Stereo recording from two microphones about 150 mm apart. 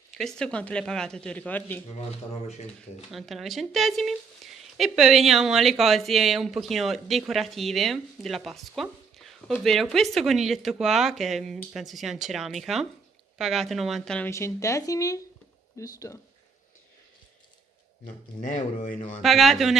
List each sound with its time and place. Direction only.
0.2 s speech: 5° left (ahead or behind)
3.1 s speech: centre (ahead or behind)
14.3 s speech: 20° left (ahead or behind)
18.4 s speech: 60° left (ahead or behind)
19.2 s speech: centre (ahead or behind)